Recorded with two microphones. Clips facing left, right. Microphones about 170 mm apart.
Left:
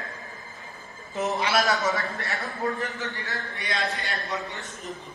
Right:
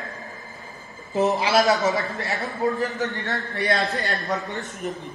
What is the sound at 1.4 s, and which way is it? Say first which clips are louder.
Speech: right 5 dB; 25° right (ahead or behind).